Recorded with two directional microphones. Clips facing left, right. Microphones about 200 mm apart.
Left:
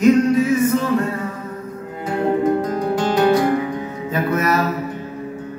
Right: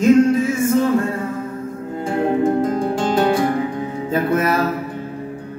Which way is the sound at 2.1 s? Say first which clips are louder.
Even; 30° right (ahead or behind).